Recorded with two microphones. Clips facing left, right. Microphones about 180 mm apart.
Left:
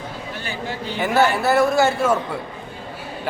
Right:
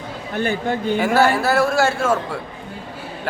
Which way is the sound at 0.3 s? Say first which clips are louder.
Right 10 dB; 55° right (ahead or behind).